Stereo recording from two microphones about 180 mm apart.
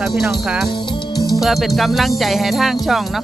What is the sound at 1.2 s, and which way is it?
Music, 20° left (ahead or behind).